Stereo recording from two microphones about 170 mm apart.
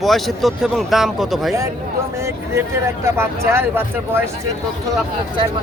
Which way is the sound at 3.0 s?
15° right (ahead or behind).